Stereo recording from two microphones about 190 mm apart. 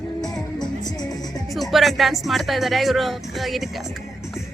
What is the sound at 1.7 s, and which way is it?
Speech, centre (ahead or behind).